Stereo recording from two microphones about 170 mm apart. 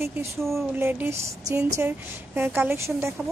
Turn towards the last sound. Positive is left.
turn(degrees=-15)  # may be behind; listen again after turning